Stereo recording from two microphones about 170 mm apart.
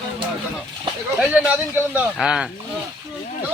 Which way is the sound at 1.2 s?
10° right (ahead or behind).